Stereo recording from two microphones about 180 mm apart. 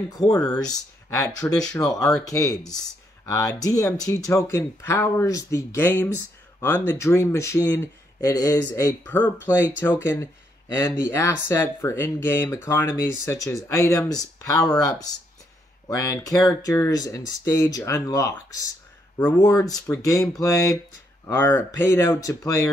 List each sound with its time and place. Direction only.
0.1 s speech: 20° left (ahead or behind)
15.9 s speech: 15° left (ahead or behind)